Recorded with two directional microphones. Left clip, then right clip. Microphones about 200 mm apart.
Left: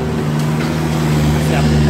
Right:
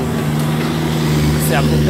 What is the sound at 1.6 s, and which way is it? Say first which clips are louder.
Speech: even; 45° left (ahead or behind).